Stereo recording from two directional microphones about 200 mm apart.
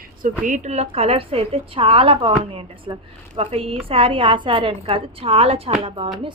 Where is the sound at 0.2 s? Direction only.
40° right (ahead or behind).